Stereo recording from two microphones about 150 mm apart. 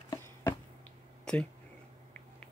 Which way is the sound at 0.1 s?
20° left (ahead or behind).